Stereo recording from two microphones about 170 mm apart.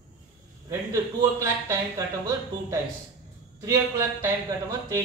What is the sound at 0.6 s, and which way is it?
A man's voice, 20° right (ahead or behind).